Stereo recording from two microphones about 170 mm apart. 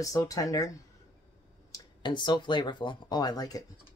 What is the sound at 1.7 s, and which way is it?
Speech, 25° left (ahead or behind).